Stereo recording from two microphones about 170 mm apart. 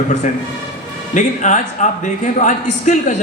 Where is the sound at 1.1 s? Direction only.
45° left (ahead or behind).